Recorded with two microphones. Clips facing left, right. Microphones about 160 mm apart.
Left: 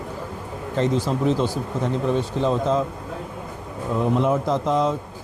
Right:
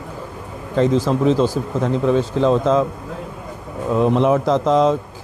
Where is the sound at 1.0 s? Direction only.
90° right.